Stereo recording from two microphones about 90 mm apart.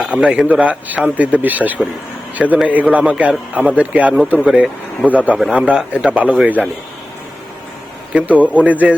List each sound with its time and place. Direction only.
0.0 s a man's voice: 10° right (ahead or behind)
8.1 s a man's voice: 15° right (ahead or behind)